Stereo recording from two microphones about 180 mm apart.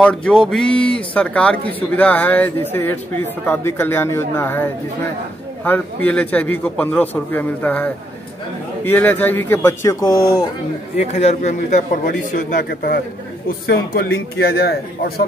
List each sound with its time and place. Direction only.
0.0 s a man's voice: 5° left (ahead or behind); by 10.5 s 20° left (ahead or behind)
11.0 s a man's voice: 35° left (ahead or behind); by 15.2 s 60° left (ahead or behind)